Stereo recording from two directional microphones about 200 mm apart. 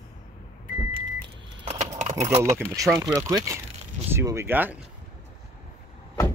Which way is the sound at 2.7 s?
15° right (ahead or behind).